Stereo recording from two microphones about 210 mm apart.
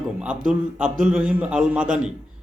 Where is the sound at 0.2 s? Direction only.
5° right (ahead or behind).